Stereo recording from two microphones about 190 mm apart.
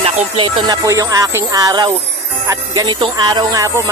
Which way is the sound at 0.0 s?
25° right (ahead or behind).